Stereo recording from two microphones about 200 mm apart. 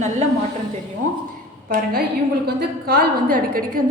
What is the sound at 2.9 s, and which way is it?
Speech, 50° right (ahead or behind).